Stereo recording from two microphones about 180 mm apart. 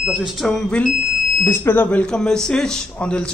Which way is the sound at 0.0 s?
5° right (ahead or behind).